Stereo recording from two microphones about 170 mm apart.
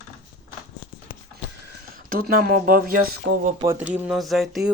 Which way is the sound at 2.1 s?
60° right (ahead or behind).